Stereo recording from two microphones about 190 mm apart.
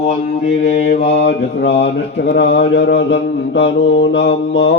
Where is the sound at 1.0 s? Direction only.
65° left (ahead or behind).